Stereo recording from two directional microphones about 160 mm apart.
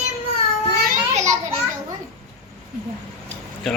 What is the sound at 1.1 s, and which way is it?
Children playing, 45° right (ahead or behind).